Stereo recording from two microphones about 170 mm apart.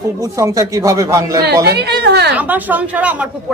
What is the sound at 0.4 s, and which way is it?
A woman's voice, 20° right (ahead or behind).